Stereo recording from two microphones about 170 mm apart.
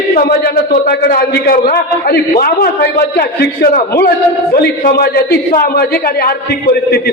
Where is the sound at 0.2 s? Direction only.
65° left (ahead or behind).